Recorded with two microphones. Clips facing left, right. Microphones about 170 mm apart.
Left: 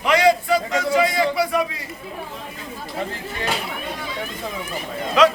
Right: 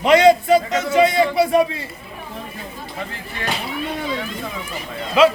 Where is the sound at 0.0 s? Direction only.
25° right (ahead or behind).